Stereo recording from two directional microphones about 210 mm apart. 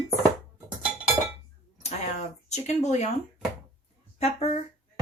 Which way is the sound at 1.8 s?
35° left (ahead or behind).